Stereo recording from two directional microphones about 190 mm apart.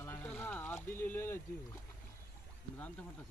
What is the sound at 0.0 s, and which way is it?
Rowboat, 10° left (ahead or behind).